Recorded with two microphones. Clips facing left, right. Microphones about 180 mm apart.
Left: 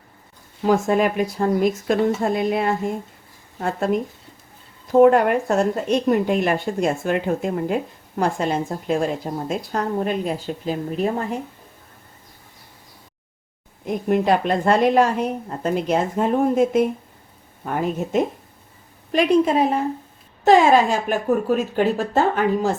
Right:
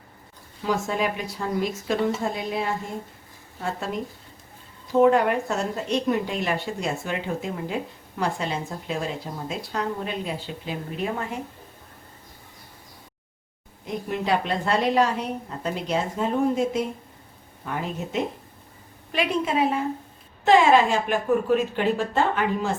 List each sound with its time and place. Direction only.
0.6 s a woman's voice: 50° left (ahead or behind)
13.8 s a woman's voice: 50° left (ahead or behind)